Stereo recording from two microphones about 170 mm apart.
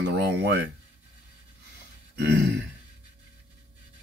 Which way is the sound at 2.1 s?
90° right.